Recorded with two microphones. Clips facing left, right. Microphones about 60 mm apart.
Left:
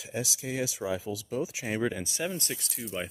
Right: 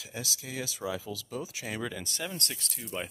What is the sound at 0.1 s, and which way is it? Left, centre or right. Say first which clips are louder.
Speech: left 6 dB; left.